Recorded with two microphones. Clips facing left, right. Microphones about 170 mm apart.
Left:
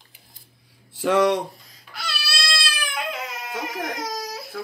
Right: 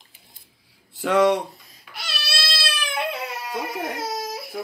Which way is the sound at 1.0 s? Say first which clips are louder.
Right 1 dB; centre (ahead or behind).